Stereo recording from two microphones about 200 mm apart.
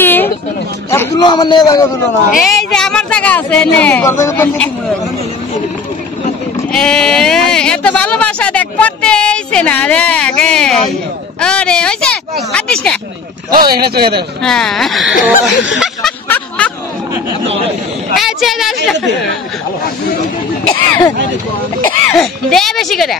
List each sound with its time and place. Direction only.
0.0 s a sound: 10° left (ahead or behind)
0.8 s a man's voice: 15° left (ahead or behind)
2.4 s speech: 5° left (ahead or behind)
6.7 s speech: 5° left (ahead or behind)
13.7 s speech: 50° right (ahead or behind)
14.4 s speech: 5° left (ahead or behind)
16.3 s a sound: 5° left (ahead or behind)
18.1 s speech: centre (ahead or behind)
20.6 s speech: 10° left (ahead or behind)